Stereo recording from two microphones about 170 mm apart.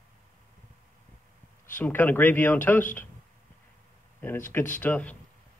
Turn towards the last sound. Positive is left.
turn(degrees=10)  # may be behind; listen again after turning